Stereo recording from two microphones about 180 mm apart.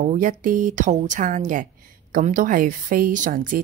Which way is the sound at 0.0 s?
45° right (ahead or behind).